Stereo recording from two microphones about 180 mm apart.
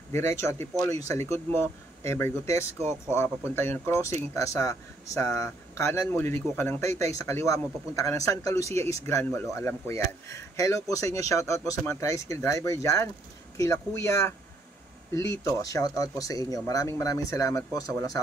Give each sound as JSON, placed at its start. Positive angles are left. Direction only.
{"t": 0.1, "sound": "speech", "side_deg": 15}
{"t": 15.4, "sound": "speech", "side_deg": 15}